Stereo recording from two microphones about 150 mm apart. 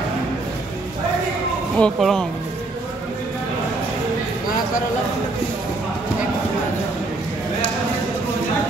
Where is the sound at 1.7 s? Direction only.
5° left (ahead or behind).